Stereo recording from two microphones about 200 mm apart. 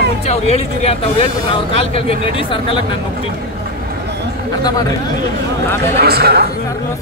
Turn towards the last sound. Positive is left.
turn(degrees=-50)  # may be behind; listen again after turning